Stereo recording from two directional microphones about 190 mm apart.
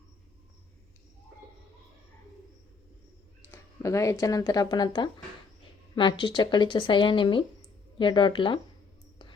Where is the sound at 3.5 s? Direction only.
15° left (ahead or behind).